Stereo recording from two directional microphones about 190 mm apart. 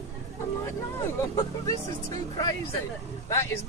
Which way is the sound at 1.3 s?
20° left (ahead or behind).